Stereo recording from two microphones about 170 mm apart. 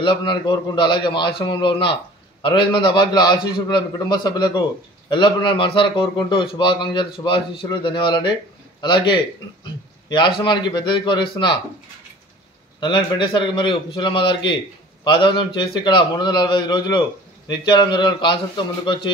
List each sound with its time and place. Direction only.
0.0 s a man's voice: 30° left (ahead or behind)
12.8 s a man's voice: 25° left (ahead or behind)